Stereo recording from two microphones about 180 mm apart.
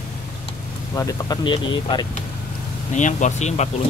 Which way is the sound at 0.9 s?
20° left (ahead or behind).